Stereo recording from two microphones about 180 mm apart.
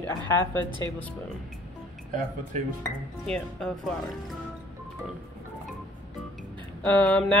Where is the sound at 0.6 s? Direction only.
25° right (ahead or behind).